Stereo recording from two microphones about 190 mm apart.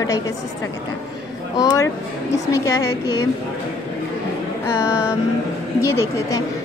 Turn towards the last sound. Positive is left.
turn(degrees=15)  # may be behind; listen again after turning